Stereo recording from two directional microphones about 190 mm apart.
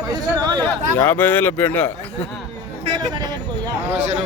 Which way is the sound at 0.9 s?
10° left (ahead or behind).